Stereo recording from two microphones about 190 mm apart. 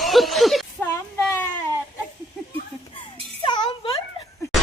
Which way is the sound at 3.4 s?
25° left (ahead or behind).